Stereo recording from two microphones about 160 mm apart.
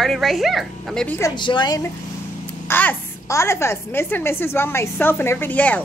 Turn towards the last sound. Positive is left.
turn(degrees=10)  # may be behind; listen again after turning